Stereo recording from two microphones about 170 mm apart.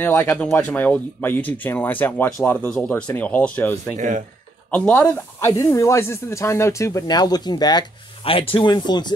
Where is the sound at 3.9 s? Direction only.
50° right (ahead or behind).